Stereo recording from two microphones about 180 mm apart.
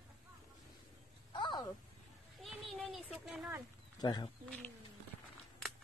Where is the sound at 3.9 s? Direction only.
20° left (ahead or behind).